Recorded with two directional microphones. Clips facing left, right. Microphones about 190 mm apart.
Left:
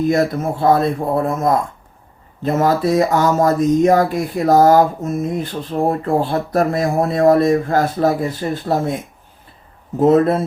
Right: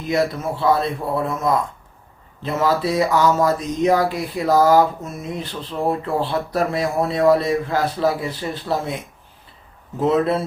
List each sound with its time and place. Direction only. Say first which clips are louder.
0.1 s speech: left 4 dB; 50° left (ahead or behind)
10.0 s speech: left 5 dB; 45° left (ahead or behind)